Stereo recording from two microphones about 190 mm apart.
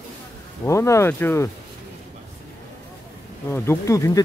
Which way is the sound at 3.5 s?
15° left (ahead or behind).